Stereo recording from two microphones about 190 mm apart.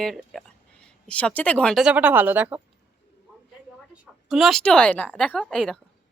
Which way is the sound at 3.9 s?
5° right (ahead or behind).